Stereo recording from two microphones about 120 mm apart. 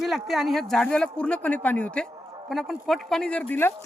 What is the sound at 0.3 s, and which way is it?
A woman's voice, centre (ahead or behind).